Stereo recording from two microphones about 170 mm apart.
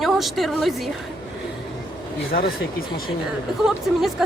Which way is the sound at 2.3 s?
70° left (ahead or behind).